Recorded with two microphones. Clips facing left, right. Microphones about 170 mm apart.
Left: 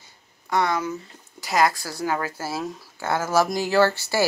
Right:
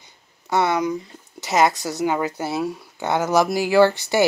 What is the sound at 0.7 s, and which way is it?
Speech, 15° right (ahead or behind).